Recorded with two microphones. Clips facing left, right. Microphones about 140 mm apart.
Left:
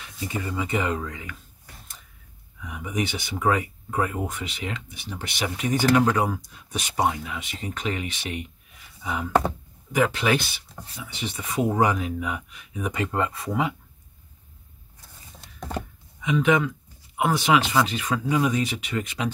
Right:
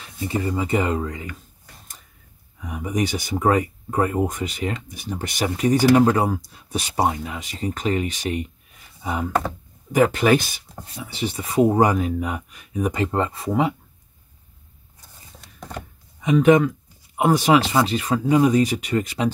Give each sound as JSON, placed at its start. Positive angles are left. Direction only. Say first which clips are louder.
{"t": 0.3, "sound": "speech", "louder": "right 5 dB", "side_deg": -35}
{"t": 2.6, "sound": "speech", "louder": "right 4 dB", "side_deg": -40}
{"t": 10.8, "sound": "speech", "louder": "right 6 dB", "side_deg": -30}
{"t": 16.2, "sound": "speech", "louder": "right 6 dB", "side_deg": -45}